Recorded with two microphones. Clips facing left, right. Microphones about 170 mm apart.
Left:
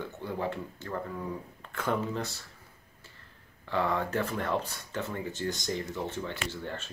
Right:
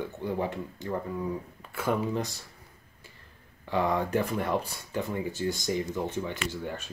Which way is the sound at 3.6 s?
15° right (ahead or behind).